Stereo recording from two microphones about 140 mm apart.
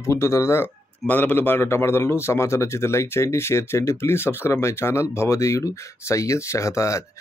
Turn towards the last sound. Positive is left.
turn(degrees=20)  # may be behind; listen again after turning